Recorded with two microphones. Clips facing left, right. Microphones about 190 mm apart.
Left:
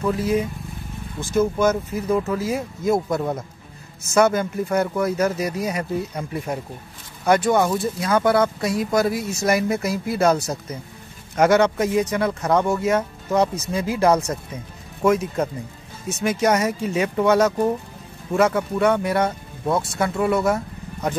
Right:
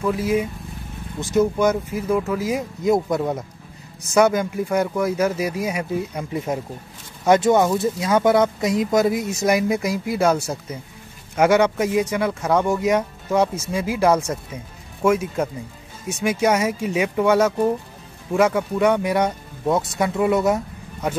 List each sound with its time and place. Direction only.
0.1 s speech: 10° right (ahead or behind)
3.2 s speech: 5° right (ahead or behind)